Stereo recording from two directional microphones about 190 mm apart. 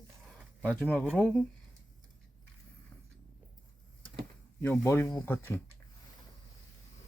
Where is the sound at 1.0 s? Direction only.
5° right (ahead or behind).